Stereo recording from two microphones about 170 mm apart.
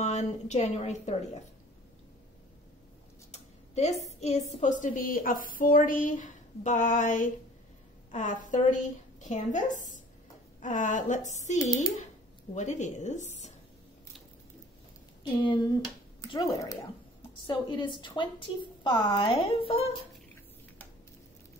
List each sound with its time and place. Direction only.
0.0 s a woman's voice: 40° left (ahead or behind)
3.3 s a sound: 40° left (ahead or behind)
4.2 s a woman's voice: 40° left (ahead or behind)
12.5 s a woman's voice: 45° left (ahead or behind)
15.4 s a woman's voice: 25° left (ahead or behind)